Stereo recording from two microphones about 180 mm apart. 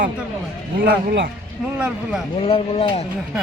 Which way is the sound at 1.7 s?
5° right (ahead or behind).